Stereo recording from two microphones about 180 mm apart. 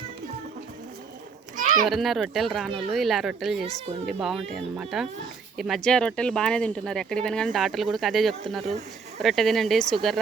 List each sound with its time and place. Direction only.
1.5 s children playing: 45° right (ahead or behind)
1.9 s speech: centre (ahead or behind)